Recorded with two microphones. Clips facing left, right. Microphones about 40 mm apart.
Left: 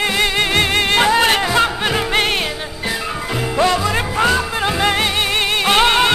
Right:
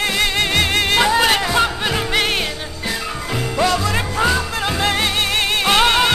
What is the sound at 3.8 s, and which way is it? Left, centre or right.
Music, centre.